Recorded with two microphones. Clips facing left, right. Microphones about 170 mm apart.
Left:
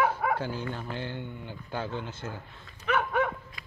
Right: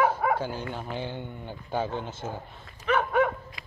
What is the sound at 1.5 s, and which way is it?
Speech, 50° right (ahead or behind).